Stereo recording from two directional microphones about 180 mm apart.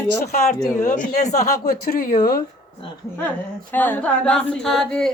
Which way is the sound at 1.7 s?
55° left (ahead or behind).